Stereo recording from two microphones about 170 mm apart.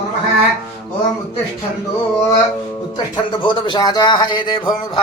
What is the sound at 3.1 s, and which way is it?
A man's voice, 30° left (ahead or behind).